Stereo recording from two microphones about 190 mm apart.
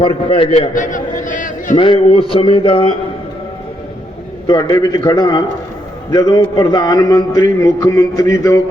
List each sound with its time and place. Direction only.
0.0 s a man's voice: 25° left (ahead or behind)
0.7 s a sound: 40° left (ahead or behind)
1.8 s a man's voice: 30° left (ahead or behind)
4.4 s a man's voice: 20° left (ahead or behind)